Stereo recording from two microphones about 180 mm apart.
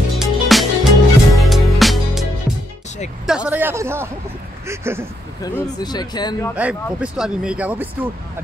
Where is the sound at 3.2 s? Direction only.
5° right (ahead or behind).